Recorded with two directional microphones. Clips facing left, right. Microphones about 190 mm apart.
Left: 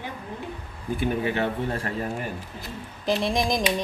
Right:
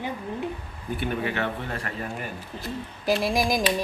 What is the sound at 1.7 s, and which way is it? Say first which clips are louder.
Speech: left 4 dB; 35° left (ahead or behind).